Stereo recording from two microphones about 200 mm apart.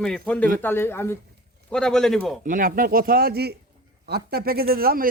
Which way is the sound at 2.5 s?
45° right (ahead or behind).